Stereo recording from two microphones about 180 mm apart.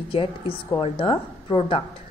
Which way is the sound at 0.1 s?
30° left (ahead or behind).